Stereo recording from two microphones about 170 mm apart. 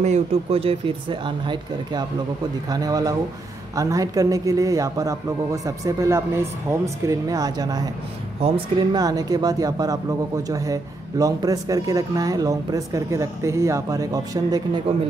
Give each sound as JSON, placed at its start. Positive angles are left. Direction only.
{"t": 0.0, "sound": "speech", "side_deg": -40}